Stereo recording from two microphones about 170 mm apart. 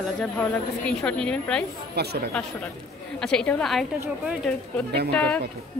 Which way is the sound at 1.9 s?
70° right (ahead or behind).